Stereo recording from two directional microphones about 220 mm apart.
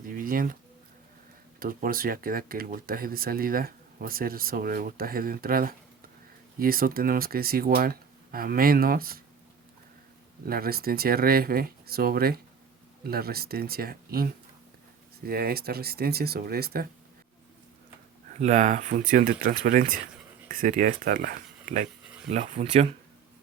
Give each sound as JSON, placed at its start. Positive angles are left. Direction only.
{"t": 0.0, "sound": "bird", "side_deg": -40}
{"t": 1.5, "sound": "speech", "side_deg": -40}
{"t": 10.4, "sound": "speech", "side_deg": -45}
{"t": 18.3, "sound": "speech", "side_deg": -30}